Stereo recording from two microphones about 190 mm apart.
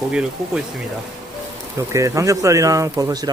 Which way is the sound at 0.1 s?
5° right (ahead or behind).